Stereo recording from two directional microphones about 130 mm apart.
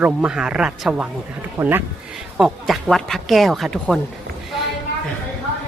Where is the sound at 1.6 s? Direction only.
20° right (ahead or behind).